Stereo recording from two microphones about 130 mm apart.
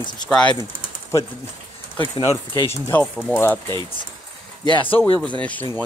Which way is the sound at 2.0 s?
35° left (ahead or behind).